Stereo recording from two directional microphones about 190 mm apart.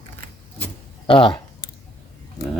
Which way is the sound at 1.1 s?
30° left (ahead or behind).